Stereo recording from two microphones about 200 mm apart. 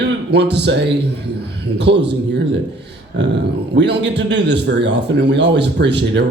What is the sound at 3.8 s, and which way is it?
A man's voice, 60° right (ahead or behind).